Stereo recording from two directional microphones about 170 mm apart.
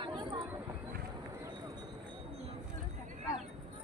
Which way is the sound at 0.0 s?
25° right (ahead or behind).